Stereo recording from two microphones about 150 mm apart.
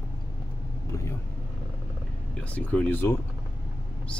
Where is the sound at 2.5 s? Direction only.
10° left (ahead or behind).